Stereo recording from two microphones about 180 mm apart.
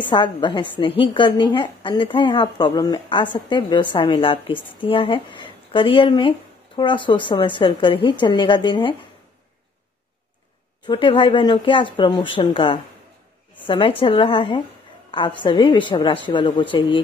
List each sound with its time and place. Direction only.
0.0 s a woman's voice: 25° left (ahead or behind)
10.9 s a woman's voice: 30° left (ahead or behind)